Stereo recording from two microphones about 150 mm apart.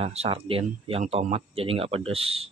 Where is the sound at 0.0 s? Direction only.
40° right (ahead or behind).